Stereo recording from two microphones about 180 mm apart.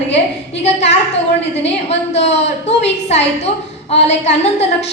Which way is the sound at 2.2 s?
35° left (ahead or behind).